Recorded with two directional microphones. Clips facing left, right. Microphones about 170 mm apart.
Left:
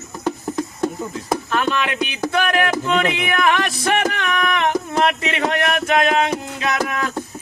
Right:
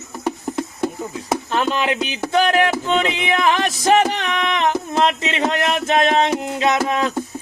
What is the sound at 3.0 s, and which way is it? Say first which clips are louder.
Music: even; 25° right (ahead or behind).